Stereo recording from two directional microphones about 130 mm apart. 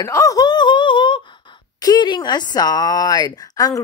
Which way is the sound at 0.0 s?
25° left (ahead or behind).